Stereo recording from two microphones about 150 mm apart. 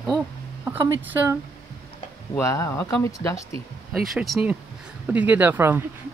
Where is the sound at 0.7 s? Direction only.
10° right (ahead or behind).